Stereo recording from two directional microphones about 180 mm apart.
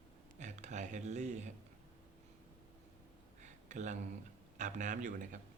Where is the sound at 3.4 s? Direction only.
45° right (ahead or behind).